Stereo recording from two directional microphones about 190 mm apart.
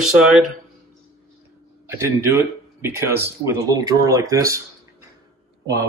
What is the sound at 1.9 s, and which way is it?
Speech, 15° right (ahead or behind).